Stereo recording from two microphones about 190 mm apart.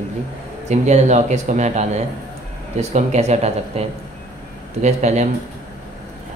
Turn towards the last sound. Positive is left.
turn(degrees=-35)  # may be behind; listen again after turning